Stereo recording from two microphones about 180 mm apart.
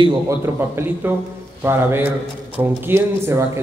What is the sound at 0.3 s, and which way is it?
A man's voice, 15° right (ahead or behind).